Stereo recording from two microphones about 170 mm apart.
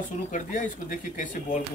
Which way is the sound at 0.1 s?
45° left (ahead or behind).